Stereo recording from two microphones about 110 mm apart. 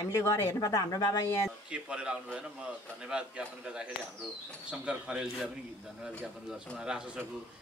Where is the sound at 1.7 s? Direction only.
10° right (ahead or behind).